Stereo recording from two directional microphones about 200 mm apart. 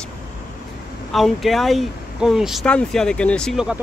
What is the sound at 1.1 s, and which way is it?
Speech, centre (ahead or behind).